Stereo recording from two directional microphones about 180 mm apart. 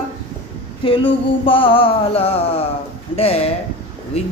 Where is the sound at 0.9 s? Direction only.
30° left (ahead or behind).